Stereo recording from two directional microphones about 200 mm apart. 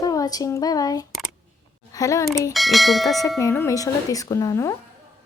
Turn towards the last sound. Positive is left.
turn(degrees=15)  # may be behind; listen again after turning